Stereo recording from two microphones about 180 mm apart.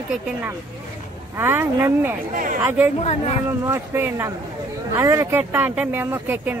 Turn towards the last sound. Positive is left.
turn(degrees=-10)  # may be behind; listen again after turning